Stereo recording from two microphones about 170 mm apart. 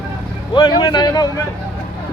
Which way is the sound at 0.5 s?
25° left (ahead or behind).